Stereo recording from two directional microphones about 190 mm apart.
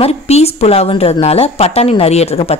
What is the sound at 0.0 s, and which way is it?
A woman's voice, 35° left (ahead or behind).